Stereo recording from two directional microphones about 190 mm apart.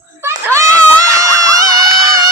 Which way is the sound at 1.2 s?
20° right (ahead or behind).